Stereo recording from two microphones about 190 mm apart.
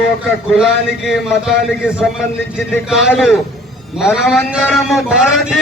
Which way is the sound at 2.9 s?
5° right (ahead or behind).